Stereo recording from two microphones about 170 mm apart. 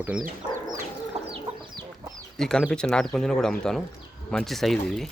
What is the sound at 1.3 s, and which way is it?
Chicken, 30° right (ahead or behind).